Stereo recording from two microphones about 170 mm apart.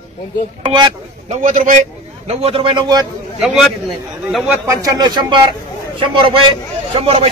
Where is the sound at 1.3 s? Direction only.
45° right (ahead or behind); by 3.1 s 25° right (ahead or behind).